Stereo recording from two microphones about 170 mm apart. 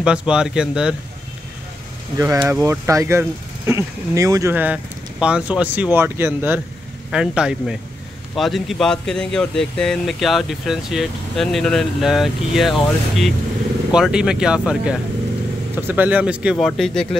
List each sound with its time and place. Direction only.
0.0 s speech: 5° right (ahead or behind)
2.1 s speech: 15° right (ahead or behind); by 17.1 s centre (ahead or behind)